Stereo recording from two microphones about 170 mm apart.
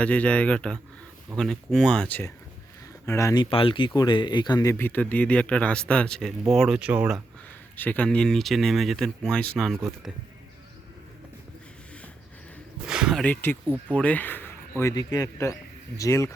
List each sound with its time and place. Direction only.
0.0 s speech: 5° left (ahead or behind)
3.5 s speech: 30° left (ahead or behind); by 7.2 s 5° right (ahead or behind)
7.8 s speech: 10° left (ahead or behind)
12.9 s a sound: 5° right (ahead or behind)
13.2 s speech: 10° left (ahead or behind)